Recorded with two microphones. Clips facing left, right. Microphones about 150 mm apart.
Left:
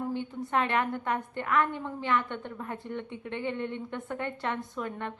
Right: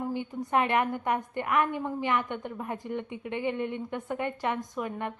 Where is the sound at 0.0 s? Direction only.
10° right (ahead or behind).